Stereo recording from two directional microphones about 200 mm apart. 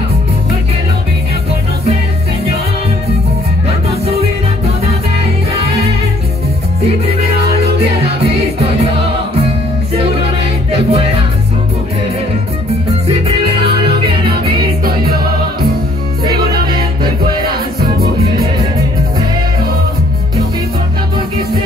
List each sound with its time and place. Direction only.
4.0 s music: 30° right (ahead or behind)
10.7 s music: 30° right (ahead or behind)
13.7 s music: 25° right (ahead or behind)